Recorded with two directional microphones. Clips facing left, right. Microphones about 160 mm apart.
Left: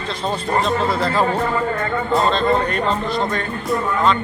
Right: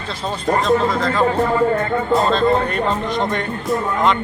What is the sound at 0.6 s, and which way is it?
Speech, 5° left (ahead or behind).